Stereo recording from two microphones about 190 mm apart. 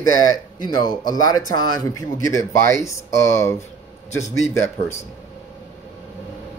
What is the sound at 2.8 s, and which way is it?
Speech, 15° left (ahead or behind).